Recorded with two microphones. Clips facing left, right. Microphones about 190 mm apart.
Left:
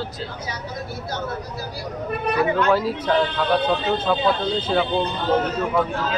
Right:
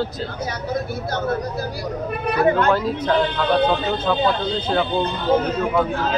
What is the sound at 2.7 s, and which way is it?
Speech, 5° left (ahead or behind).